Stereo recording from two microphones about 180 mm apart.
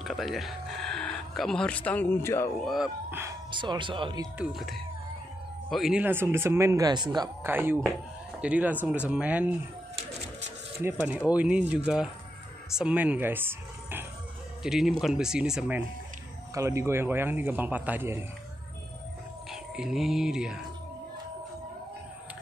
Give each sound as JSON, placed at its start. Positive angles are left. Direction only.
{"t": 0.0, "sound": "speech", "side_deg": 0}
{"t": 2.6, "sound": "speech", "side_deg": 0}
{"t": 3.1, "sound": "music", "side_deg": -15}
{"t": 3.5, "sound": "speech", "side_deg": -25}
{"t": 4.4, "sound": "a man's voice", "side_deg": 0}
{"t": 7.4, "sound": "a man's voice", "side_deg": -10}
{"t": 10.8, "sound": "a man's voice", "side_deg": -15}
{"t": 16.5, "sound": "a man's voice", "side_deg": -15}
{"t": 19.5, "sound": "speech", "side_deg": -5}